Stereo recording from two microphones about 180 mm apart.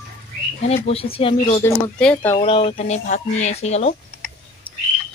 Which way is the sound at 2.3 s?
30° left (ahead or behind).